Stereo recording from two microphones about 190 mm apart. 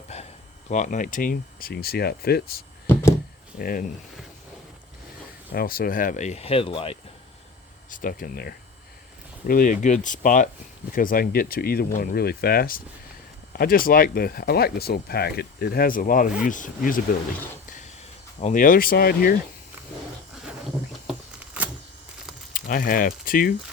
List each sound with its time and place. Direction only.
0.1 s a sound: 35° left (ahead or behind)
0.7 s speech: 40° left (ahead or behind)
2.8 s a sound: 15° left (ahead or behind)
3.6 s speech: 50° left (ahead or behind)
5.5 s speech: 50° left (ahead or behind); by 7.0 s 30° left (ahead or behind)
7.9 s speech: 45° left (ahead or behind)
18.3 s speech: 40° left (ahead or behind)
21.1 s a sound: 5° right (ahead or behind)
22.5 s speech: 45° left (ahead or behind)